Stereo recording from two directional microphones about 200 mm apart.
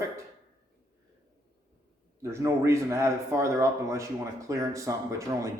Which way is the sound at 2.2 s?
15° right (ahead or behind).